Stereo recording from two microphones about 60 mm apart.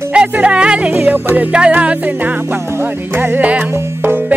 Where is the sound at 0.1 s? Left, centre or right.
Centre.